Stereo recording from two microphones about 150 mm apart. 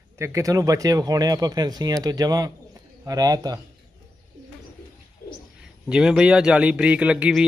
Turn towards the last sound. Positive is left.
turn(degrees=-5)  # may be behind; listen again after turning